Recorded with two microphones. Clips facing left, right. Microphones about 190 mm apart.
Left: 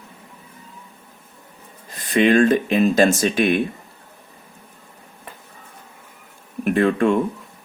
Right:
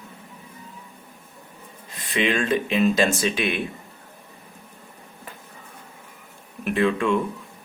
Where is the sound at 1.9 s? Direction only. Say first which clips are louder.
Left 8 dB; 45° left (ahead or behind).